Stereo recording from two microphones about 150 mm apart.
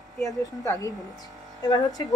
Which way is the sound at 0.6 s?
20° left (ahead or behind).